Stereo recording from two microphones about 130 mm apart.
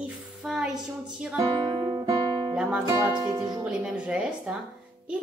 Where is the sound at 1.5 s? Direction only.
40° right (ahead or behind).